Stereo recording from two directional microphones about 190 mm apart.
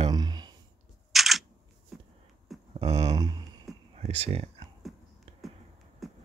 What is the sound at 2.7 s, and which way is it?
Speech, 30° right (ahead or behind).